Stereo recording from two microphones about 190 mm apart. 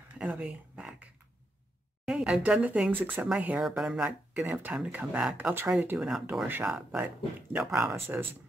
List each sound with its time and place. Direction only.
0.2 s speech: 5° right (ahead or behind)
2.0 s speech: 5° right (ahead or behind)